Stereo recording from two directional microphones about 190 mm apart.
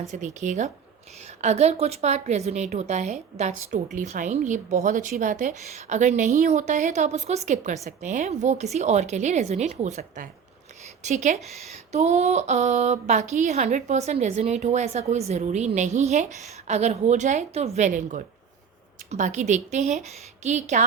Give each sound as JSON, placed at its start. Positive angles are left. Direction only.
{"t": 0.0, "sound": "a woman's voice", "side_deg": -40}